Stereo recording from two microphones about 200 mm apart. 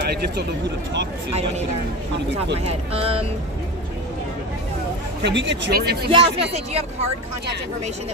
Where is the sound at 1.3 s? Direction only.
30° right (ahead or behind).